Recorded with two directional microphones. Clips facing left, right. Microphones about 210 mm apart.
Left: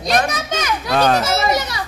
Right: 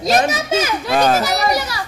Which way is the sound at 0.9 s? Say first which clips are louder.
Even; 5° right (ahead or behind).